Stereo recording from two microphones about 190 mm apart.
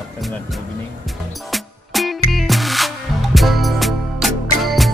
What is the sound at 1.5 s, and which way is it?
Music, centre (ahead or behind).